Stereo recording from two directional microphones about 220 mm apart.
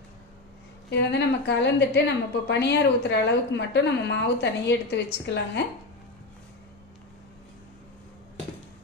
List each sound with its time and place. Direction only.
0.8 s a woman's voice: 50° left (ahead or behind)